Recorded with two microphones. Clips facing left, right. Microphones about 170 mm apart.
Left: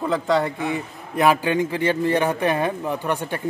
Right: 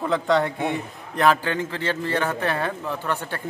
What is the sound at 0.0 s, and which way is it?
A man's voice, centre (ahead or behind).